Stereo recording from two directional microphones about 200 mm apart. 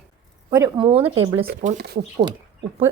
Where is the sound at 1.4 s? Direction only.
40° right (ahead or behind).